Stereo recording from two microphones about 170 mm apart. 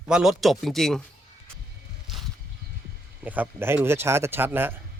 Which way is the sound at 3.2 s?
10° right (ahead or behind).